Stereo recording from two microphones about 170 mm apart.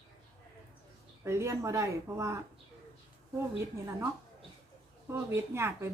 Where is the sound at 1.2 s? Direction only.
15° right (ahead or behind).